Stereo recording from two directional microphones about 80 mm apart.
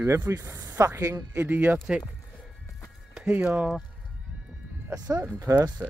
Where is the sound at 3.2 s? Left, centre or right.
Right.